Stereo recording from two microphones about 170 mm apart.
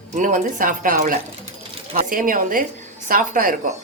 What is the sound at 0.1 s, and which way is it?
Speech, 50° right (ahead or behind).